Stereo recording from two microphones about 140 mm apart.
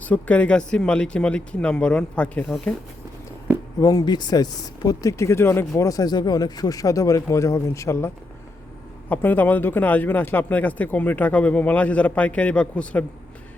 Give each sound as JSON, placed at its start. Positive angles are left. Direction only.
{"t": 0.0, "sound": "speech", "side_deg": 10}
{"t": 3.8, "sound": "speech", "side_deg": 25}